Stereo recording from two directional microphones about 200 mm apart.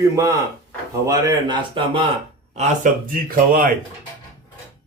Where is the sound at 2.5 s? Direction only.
40° right (ahead or behind).